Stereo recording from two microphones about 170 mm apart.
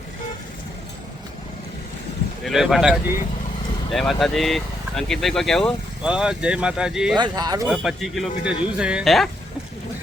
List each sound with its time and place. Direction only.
2.4 s speech: centre (ahead or behind)
3.9 s speech: centre (ahead or behind)
7.2 s speech: 25° right (ahead or behind)
7.7 s speech: centre (ahead or behind)